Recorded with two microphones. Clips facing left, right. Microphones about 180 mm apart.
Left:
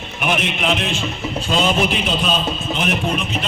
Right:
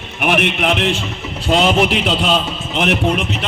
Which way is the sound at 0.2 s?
60° right (ahead or behind).